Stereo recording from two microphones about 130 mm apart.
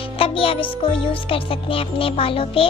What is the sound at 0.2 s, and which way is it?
Music, 45° left (ahead or behind).